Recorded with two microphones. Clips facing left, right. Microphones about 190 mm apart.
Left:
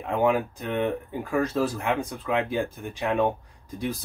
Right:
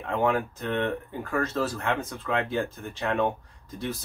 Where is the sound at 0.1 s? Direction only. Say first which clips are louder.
Left 2 dB; 15° left (ahead or behind).